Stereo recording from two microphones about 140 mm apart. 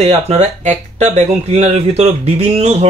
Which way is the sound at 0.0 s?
55° right (ahead or behind).